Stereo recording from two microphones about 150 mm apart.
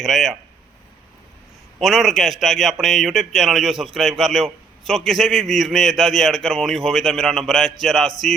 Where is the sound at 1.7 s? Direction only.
Centre (ahead or behind).